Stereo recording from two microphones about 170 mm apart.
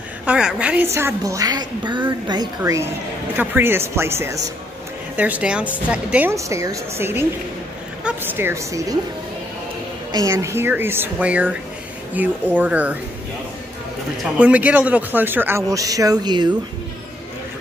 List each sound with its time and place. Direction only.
0.2 s speech: 5° right (ahead or behind)
10.1 s speech: 20° right (ahead or behind)
14.4 s speech: 10° right (ahead or behind); by 16.5 s 25° right (ahead or behind)